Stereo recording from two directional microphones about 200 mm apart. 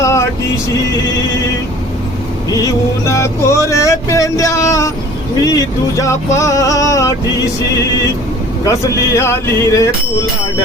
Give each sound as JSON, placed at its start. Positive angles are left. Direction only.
{"t": 0.0, "sound": "vehicle", "side_deg": 15}
{"t": 2.5, "sound": "music", "side_deg": 15}
{"t": 5.5, "sound": "speech", "side_deg": 15}
{"t": 8.6, "sound": "speech", "side_deg": 15}